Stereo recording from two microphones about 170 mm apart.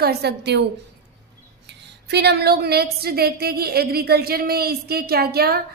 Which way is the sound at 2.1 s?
75° right (ahead or behind).